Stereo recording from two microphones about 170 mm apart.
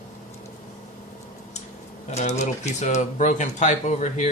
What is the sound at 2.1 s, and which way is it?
Speech, 40° left (ahead or behind).